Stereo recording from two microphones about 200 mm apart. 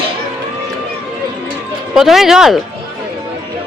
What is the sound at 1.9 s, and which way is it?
Speech, centre (ahead or behind).